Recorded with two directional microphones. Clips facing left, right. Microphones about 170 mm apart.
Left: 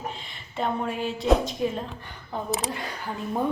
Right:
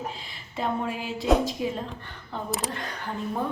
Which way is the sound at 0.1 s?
5° right (ahead or behind).